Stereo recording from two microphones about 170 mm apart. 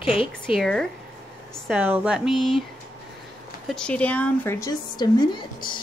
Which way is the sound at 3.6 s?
5° left (ahead or behind).